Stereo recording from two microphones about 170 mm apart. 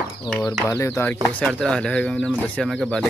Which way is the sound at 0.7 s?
15° left (ahead or behind).